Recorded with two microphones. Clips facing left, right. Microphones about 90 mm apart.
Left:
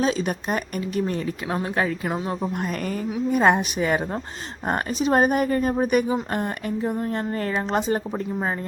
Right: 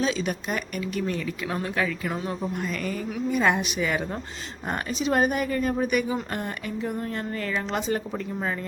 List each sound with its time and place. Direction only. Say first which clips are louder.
0.0 s speech: left 3 dB; 40° left (ahead or behind)
2.6 s speech: left 3 dB; 45° left (ahead or behind)